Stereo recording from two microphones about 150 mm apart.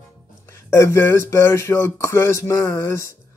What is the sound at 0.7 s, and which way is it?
Speech, 20° left (ahead or behind).